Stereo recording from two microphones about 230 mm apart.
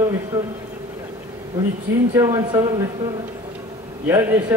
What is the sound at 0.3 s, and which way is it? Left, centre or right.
Speech, centre.